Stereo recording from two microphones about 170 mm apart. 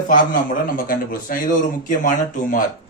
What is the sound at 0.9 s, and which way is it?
Speech, 55° left (ahead or behind).